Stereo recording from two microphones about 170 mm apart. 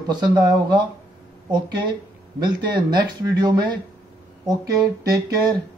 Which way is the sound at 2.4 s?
25° right (ahead or behind).